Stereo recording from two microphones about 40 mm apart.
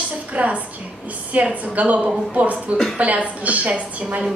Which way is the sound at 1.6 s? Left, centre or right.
Right.